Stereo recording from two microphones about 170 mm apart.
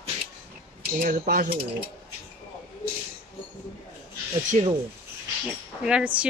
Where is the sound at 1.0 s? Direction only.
55° right (ahead or behind).